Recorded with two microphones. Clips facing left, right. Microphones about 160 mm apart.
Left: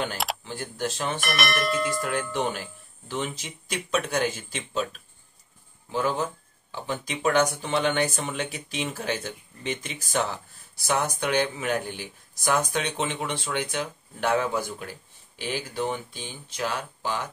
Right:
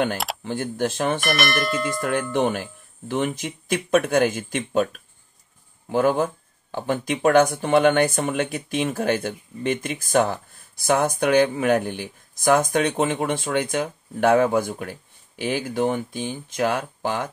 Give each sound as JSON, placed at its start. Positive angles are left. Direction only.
{"t": 0.4, "sound": "speech", "side_deg": -55}
{"t": 1.2, "sound": "speech", "side_deg": 0}
{"t": 2.0, "sound": "speech", "side_deg": -55}
{"t": 5.9, "sound": "speech", "side_deg": -55}